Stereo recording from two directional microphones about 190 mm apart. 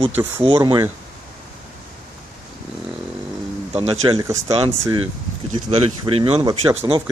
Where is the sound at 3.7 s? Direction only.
30° right (ahead or behind).